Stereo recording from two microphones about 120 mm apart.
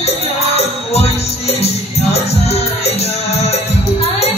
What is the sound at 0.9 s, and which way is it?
Music, 60° left (ahead or behind).